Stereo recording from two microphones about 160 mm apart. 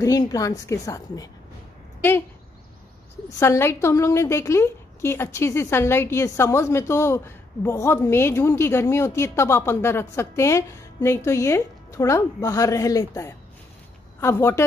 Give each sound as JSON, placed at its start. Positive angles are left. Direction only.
{"t": 0.0, "sound": "a woman's voice", "side_deg": 20}
{"t": 3.3, "sound": "a woman's voice", "side_deg": 15}